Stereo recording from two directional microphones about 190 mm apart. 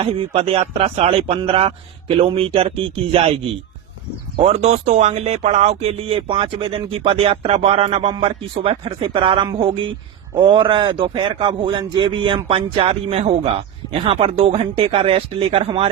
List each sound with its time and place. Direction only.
0.0 s a man's voice: 30° right (ahead or behind)
4.4 s a man's voice: 35° right (ahead or behind)